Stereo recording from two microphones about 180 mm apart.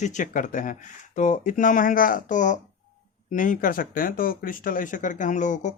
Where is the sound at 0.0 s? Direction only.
45° left (ahead or behind).